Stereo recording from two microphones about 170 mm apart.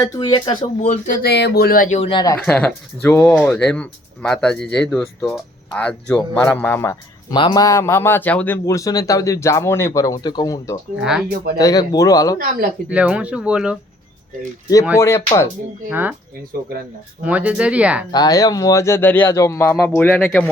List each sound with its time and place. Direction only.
0.0 s a man's voice: 20° left (ahead or behind)
0.6 s speech: 45° left (ahead or behind)
2.0 s a man's voice: 30° left (ahead or behind)
2.4 s a man's voice: 5° left (ahead or behind)
12.9 s speech: 5° right (ahead or behind)
14.9 s speech: 15° left (ahead or behind)
15.9 s speech: 10° right (ahead or behind)
17.2 s speech: 10° right (ahead or behind)
18.1 s a man's voice: 20° left (ahead or behind); by 20.5 s 5° left (ahead or behind)